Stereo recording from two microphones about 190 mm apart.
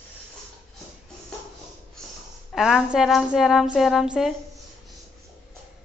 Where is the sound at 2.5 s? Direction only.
Centre (ahead or behind).